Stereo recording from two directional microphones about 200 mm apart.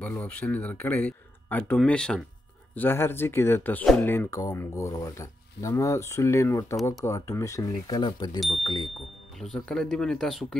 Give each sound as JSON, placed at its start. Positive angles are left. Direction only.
{"t": 0.0, "sound": "speech", "side_deg": 5}
{"t": 8.4, "sound": "speech", "side_deg": 0}